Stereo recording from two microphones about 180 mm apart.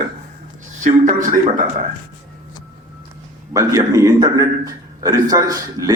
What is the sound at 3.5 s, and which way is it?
A man's voice, 15° right (ahead or behind).